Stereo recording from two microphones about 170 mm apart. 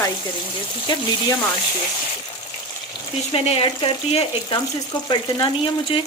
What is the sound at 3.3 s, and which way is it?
Speech, 35° left (ahead or behind).